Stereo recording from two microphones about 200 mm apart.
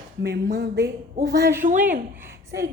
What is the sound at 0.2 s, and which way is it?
Speech, 50° right (ahead or behind).